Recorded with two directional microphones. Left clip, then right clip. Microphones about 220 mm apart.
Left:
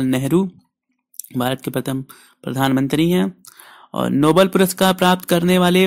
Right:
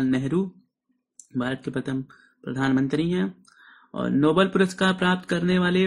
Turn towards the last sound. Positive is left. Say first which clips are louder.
# left 8 dB
turn(degrees=40)  # may be behind; listen again after turning